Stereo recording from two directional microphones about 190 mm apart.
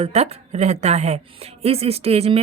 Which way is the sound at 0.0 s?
35° right (ahead or behind).